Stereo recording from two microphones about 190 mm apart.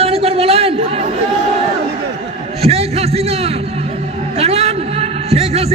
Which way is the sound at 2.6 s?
30° right (ahead or behind).